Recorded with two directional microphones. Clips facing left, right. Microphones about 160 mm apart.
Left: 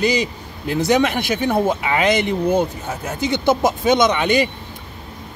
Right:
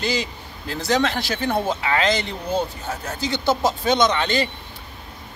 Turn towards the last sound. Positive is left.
turn(degrees=15)  # may be behind; listen again after turning